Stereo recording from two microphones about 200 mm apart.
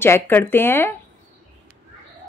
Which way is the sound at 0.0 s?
10° left (ahead or behind).